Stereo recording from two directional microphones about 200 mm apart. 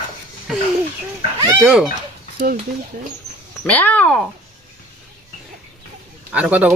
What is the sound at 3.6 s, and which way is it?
Speech, 10° left (ahead or behind).